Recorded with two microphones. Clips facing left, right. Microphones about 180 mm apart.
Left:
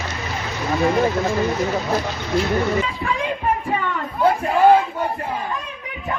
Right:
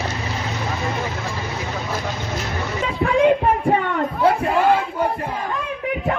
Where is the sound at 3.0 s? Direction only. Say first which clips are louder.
Right 8 dB; 60° right (ahead or behind).